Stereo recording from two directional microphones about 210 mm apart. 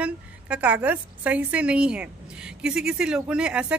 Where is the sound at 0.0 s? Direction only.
5° right (ahead or behind).